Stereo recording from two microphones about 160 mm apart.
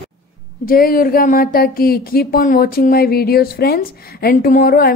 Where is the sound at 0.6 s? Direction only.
65° left (ahead or behind).